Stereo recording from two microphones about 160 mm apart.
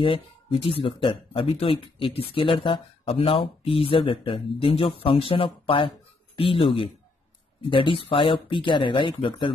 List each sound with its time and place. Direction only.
0.0 s speech: 35° left (ahead or behind)